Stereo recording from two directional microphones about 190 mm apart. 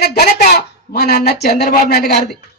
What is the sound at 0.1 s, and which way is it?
A woman's voice, 55° left (ahead or behind).